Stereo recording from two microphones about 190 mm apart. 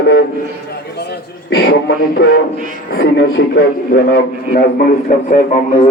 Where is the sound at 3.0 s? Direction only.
60° left (ahead or behind).